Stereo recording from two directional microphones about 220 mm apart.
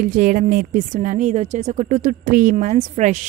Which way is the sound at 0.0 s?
40° right (ahead or behind).